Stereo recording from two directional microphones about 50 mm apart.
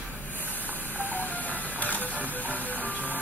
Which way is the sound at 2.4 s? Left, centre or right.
Left.